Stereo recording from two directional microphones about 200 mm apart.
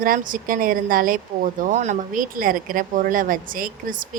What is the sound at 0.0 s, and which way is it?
A woman's voice, 45° right (ahead or behind).